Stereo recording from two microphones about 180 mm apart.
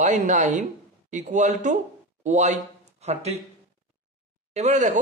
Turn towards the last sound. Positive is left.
turn(degrees=-40)  # may be behind; listen again after turning